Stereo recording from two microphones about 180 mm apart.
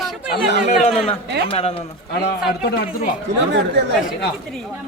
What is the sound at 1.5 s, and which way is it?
Speech, 35° left (ahead or behind).